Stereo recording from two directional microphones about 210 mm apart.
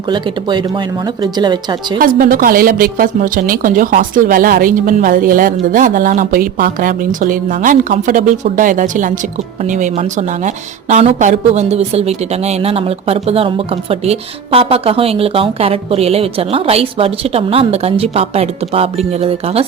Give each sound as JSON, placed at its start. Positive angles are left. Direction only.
{"t": 0.1, "sound": "a woman's voice", "side_deg": -20}
{"t": 2.0, "sound": "a woman's voice", "side_deg": -40}